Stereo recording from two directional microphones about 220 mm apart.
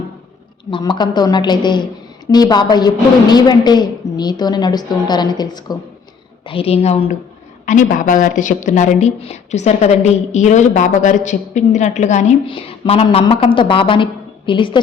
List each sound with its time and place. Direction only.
0.7 s a woman's voice: 20° left (ahead or behind)